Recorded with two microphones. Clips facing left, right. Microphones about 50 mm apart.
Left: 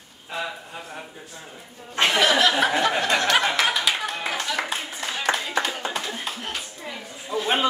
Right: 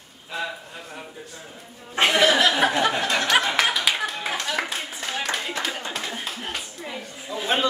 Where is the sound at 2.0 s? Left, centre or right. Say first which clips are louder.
Right 1 dB; centre.